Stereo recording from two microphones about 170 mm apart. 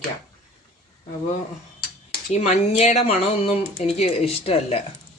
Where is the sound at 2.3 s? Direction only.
40° left (ahead or behind).